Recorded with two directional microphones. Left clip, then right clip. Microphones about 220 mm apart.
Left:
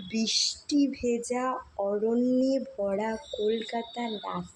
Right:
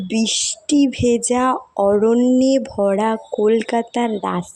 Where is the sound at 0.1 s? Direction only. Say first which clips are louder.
Right 7 dB; 35° right (ahead or behind).